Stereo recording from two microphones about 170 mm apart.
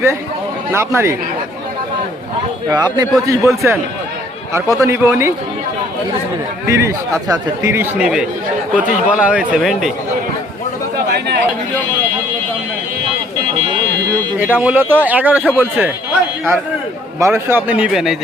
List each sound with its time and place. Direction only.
0.7 s speech: 15° right (ahead or behind)
2.6 s speech: 25° right (ahead or behind)
6.7 s speech: 15° right (ahead or behind); by 9.9 s centre (ahead or behind)
11.1 s a sound: 80° right
14.3 s speech: 10° right (ahead or behind)
17.2 s speech: 15° right (ahead or behind)